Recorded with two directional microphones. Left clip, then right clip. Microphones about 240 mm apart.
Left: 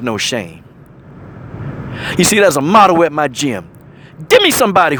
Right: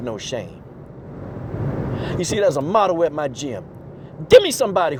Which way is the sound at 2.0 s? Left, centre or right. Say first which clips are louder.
Left 10 dB; left.